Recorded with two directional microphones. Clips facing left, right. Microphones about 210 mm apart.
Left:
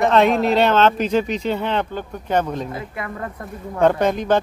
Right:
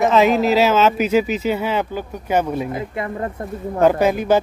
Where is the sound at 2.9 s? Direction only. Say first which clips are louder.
Right 5 dB; 25° right (ahead or behind).